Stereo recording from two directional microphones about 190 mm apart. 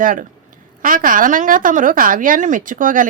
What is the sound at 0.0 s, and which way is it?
A woman's voice, 45° right (ahead or behind).